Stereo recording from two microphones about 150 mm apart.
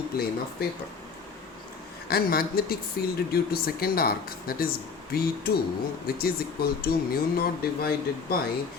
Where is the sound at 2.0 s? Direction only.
90° left.